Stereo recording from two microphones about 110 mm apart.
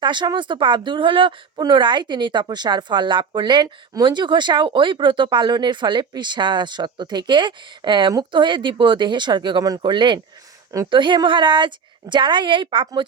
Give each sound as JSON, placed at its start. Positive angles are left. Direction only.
{"t": 0.0, "sound": "speech", "side_deg": -45}